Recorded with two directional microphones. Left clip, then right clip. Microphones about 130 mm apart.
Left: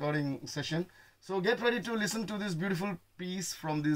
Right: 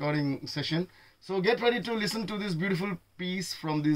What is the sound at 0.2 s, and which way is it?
Speech, 25° left (ahead or behind).